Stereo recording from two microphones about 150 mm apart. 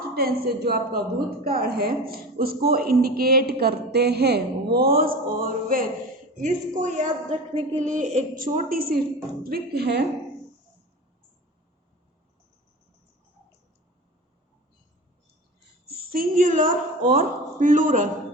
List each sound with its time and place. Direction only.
0.1 s a woman's voice: 90° right; by 5.9 s 70° right (ahead or behind)
6.3 s a woman's voice: 55° right (ahead or behind); by 10.0 s 90° right
15.9 s a woman's voice: 85° right; by 18.1 s 60° right (ahead or behind)